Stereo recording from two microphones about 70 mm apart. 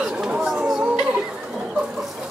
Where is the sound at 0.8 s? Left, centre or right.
Centre.